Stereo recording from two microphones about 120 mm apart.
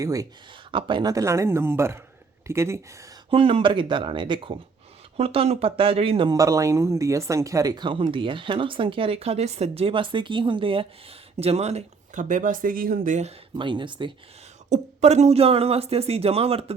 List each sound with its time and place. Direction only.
0.0 s speech: 30° right (ahead or behind)
0.7 s speech: 45° right (ahead or behind)
1.1 s speech: 25° right (ahead or behind)
3.2 s speech: 50° right (ahead or behind)
6.3 s speech: 30° right (ahead or behind); by 10.8 s 45° right (ahead or behind)
11.3 s speech: 60° right (ahead or behind); by 12.5 s 90° right
13.1 s speech: 75° right (ahead or behind)
13.6 s speech: 40° right (ahead or behind)
14.7 s speech: 70° right (ahead or behind)